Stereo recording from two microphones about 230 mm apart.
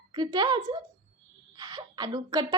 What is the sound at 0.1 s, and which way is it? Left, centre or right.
A woman's voice, centre.